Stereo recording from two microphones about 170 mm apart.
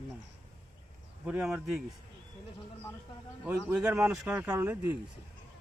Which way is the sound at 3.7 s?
10° right (ahead or behind).